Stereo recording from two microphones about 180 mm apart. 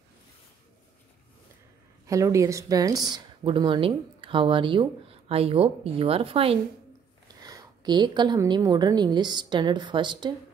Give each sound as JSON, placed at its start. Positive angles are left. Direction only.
{"t": 2.0, "sound": "speech", "side_deg": -15}